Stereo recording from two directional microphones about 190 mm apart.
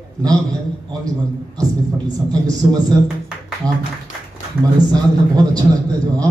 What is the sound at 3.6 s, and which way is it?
Speech, 5° left (ahead or behind).